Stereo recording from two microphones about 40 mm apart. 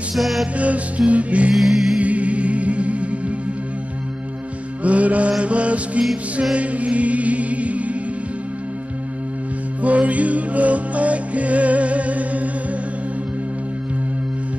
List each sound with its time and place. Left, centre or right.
0.1 s music: centre
0.6 s music: right
1.5 s music: centre
2.0 s music: right
4.8 s mantra: right
5.4 s music: right
9.8 s music: right